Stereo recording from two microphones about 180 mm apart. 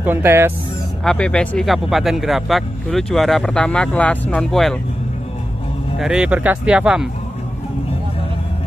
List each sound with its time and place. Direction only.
0.0 s speech: 10° right (ahead or behind)
1.0 s speech: 5° left (ahead or behind)
5.9 s speech: 5° right (ahead or behind)